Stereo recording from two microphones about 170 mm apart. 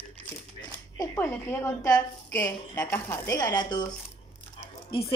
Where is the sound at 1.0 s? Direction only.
20° left (ahead or behind).